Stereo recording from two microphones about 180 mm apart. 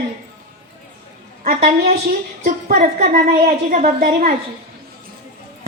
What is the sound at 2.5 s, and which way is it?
A woman's voice, 45° right (ahead or behind).